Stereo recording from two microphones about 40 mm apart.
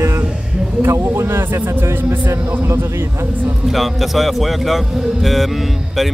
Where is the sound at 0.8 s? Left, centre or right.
Right.